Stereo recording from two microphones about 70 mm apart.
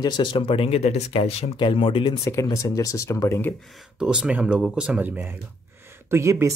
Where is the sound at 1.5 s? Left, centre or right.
Left.